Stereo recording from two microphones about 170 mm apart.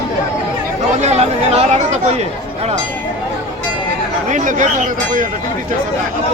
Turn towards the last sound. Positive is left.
turn(degrees=-50)  # may be behind; listen again after turning